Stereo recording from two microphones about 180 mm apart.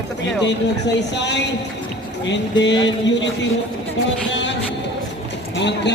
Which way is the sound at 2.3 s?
80° left.